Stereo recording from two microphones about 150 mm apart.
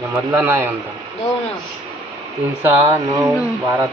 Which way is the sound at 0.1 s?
15° right (ahead or behind).